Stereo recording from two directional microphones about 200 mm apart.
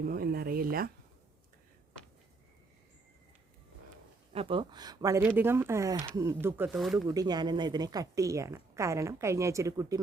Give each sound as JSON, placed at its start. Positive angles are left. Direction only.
{"t": 0.0, "sound": "a sound", "side_deg": -45}
{"t": 4.3, "sound": "a woman's voice", "side_deg": -30}
{"t": 6.7, "sound": "speech", "side_deg": 0}
{"t": 7.1, "sound": "a woman's voice", "side_deg": -20}